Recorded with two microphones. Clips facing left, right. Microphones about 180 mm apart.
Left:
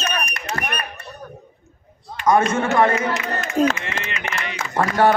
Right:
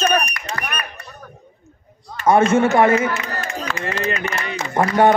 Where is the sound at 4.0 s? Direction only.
40° right (ahead or behind).